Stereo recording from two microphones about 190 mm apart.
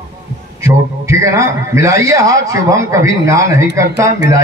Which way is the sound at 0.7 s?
15° right (ahead or behind).